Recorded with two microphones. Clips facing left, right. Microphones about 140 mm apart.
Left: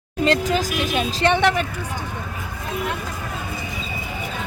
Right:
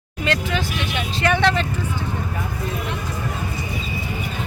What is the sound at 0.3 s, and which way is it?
Speech, 40° left (ahead or behind).